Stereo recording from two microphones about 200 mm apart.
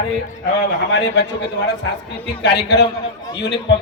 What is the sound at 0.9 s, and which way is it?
A man's voice, 60° left (ahead or behind).